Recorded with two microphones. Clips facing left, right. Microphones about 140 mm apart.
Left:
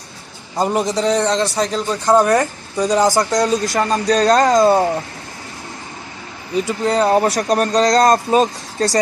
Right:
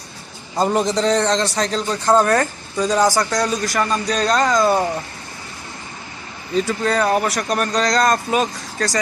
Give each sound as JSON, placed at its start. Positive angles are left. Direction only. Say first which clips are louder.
{"t": 0.6, "sound": "a man's voice", "louder": "even", "side_deg": 10}
{"t": 4.1, "sound": "speech", "louder": "left 6 dB", "side_deg": 45}
{"t": 4.6, "sound": "speech", "louder": "left 4 dB", "side_deg": 25}
{"t": 6.5, "sound": "speech", "louder": "left 1 dB", "side_deg": 15}